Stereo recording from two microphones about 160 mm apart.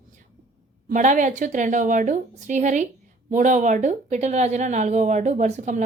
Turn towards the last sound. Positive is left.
turn(degrees=-50)  # may be behind; listen again after turning